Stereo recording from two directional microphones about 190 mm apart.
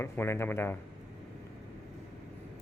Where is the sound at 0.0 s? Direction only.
15° left (ahead or behind).